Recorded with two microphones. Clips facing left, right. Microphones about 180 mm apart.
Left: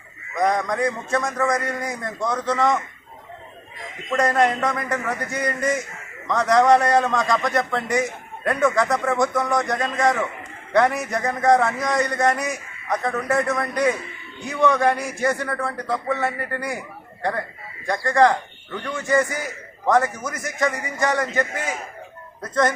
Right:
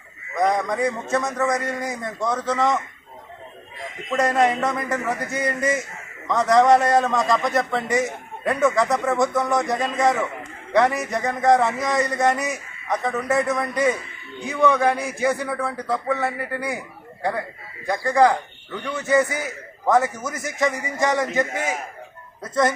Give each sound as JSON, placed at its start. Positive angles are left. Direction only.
{"t": 0.3, "sound": "a man's voice", "side_deg": 0}
{"t": 4.1, "sound": "a man's voice", "side_deg": 0}
{"t": 17.8, "sound": "a man's voice", "side_deg": -5}